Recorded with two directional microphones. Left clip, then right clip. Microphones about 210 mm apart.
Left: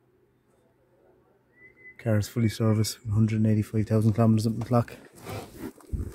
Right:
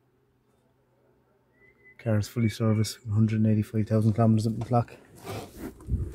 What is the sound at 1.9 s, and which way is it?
Speech, 15° left (ahead or behind).